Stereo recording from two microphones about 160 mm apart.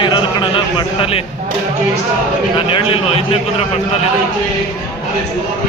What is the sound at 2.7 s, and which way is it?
Speech, 35° left (ahead or behind).